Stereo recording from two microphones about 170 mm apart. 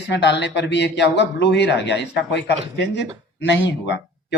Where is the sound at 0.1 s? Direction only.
90° left.